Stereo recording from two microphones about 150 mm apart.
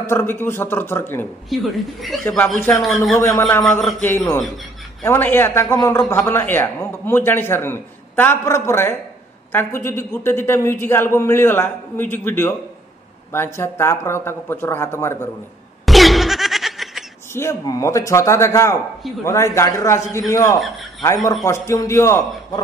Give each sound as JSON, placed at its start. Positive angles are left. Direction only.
{"t": 0.1, "sound": "a man's voice", "side_deg": 15}
{"t": 1.5, "sound": "speech", "side_deg": 0}
{"t": 2.2, "sound": "a man's voice", "side_deg": 15}
{"t": 5.0, "sound": "a man's voice", "side_deg": 15}
{"t": 15.8, "sound": "a sound", "side_deg": 0}
{"t": 17.3, "sound": "a man's voice", "side_deg": 20}